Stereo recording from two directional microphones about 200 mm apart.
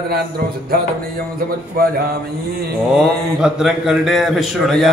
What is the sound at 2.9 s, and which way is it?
A man's voice, 5° right (ahead or behind).